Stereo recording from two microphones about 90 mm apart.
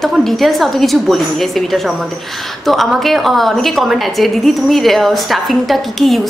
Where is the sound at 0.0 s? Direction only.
Centre (ahead or behind).